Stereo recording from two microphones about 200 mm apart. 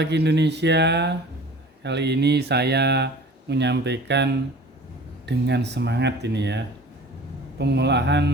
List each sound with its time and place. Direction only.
0.0 s speech: 60° right (ahead or behind)